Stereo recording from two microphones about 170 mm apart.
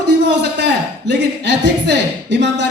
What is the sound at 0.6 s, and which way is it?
A man's voice, 90° right.